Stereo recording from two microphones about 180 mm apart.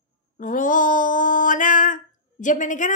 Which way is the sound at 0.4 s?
45° left (ahead or behind).